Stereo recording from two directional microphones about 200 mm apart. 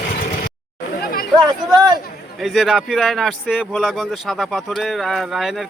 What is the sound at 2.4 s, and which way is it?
Speech, centre (ahead or behind).